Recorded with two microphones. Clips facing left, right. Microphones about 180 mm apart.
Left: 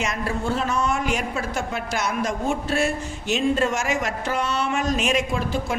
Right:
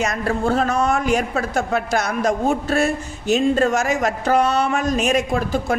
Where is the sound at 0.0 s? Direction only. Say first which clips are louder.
Right 5 dB; 40° right (ahead or behind).